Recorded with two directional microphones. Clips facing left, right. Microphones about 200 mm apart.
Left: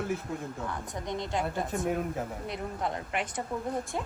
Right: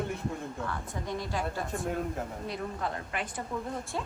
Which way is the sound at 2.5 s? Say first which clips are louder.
Left 1 dB; 20° left (ahead or behind).